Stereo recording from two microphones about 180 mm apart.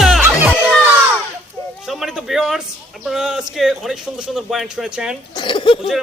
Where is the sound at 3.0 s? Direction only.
Centre (ahead or behind).